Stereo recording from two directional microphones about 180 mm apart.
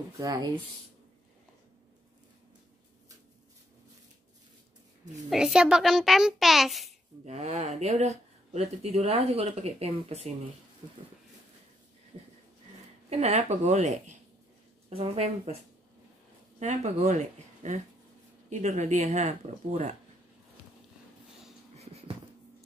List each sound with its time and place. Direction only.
0.2 s speech: 20° right (ahead or behind)
5.3 s a child's voice: 5° right (ahead or behind)
7.2 s speech: 40° right (ahead or behind)
13.1 s speech: 35° right (ahead or behind)
16.5 s speech: 40° right (ahead or behind)
21.7 s wheeze: 35° right (ahead or behind)